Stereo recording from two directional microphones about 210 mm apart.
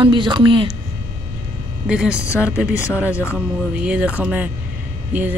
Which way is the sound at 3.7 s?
5° right (ahead or behind).